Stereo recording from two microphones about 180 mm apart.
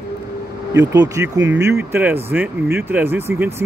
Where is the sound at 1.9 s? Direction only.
10° right (ahead or behind).